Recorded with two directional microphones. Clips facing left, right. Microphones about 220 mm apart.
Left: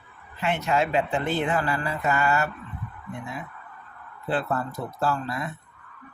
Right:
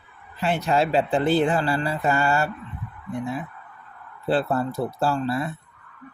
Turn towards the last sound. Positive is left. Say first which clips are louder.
# right 4 dB
turn(degrees=-30)  # may be behind; listen again after turning